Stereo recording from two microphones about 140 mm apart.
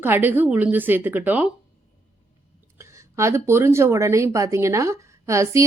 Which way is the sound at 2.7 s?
20° right (ahead or behind).